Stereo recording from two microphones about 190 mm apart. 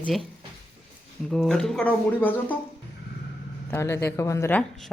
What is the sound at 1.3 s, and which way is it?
Speech, centre (ahead or behind).